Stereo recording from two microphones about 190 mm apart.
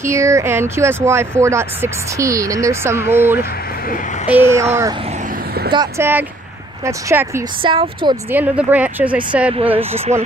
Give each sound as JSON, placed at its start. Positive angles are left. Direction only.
{"t": 0.1, "sound": "speech", "side_deg": -15}
{"t": 4.5, "sound": "speech", "side_deg": -15}
{"t": 7.6, "sound": "speech", "side_deg": -25}
{"t": 8.3, "sound": "speech", "side_deg": -10}
{"t": 9.5, "sound": "speech", "side_deg": -30}